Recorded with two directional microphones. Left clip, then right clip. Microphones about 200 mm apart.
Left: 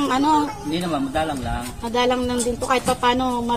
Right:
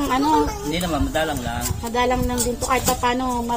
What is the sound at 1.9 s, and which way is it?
Speech, 45° left (ahead or behind).